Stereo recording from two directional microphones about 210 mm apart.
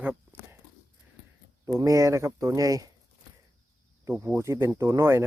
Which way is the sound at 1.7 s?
15° right (ahead or behind).